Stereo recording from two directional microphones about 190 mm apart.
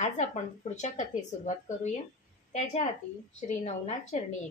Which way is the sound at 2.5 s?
40° left (ahead or behind).